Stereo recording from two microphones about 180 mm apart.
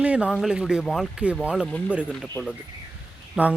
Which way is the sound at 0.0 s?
5° right (ahead or behind).